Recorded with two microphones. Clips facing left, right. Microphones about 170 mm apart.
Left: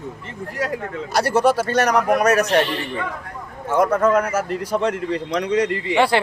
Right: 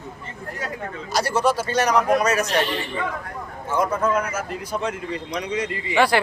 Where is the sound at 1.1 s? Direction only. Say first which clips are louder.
Left 4 dB; 60° left (ahead or behind).